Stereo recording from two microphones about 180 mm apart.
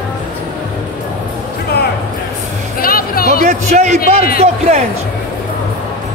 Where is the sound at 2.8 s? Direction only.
55° left (ahead or behind).